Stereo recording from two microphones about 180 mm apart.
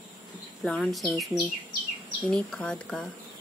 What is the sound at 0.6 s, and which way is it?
Speech, centre (ahead or behind).